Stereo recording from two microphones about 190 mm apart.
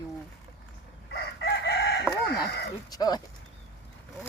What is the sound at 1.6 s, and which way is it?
Chicken, 60° left (ahead or behind).